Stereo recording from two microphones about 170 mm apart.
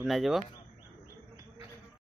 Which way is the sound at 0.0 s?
Centre (ahead or behind).